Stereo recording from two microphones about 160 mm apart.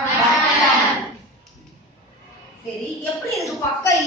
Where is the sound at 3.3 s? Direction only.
20° left (ahead or behind).